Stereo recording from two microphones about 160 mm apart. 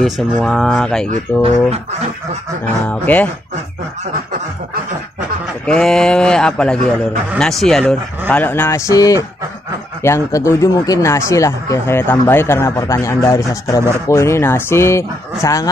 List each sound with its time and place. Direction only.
0.0 s speech: centre (ahead or behind)
2.9 s speech: 10° left (ahead or behind)
5.7 s speech: 5° left (ahead or behind); by 15.7 s 20° left (ahead or behind)